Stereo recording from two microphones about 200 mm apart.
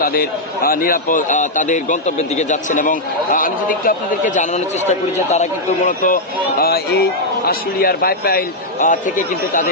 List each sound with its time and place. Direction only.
0.0 s a man's voice: 45° left (ahead or behind)
6.6 s a man's voice: 50° left (ahead or behind)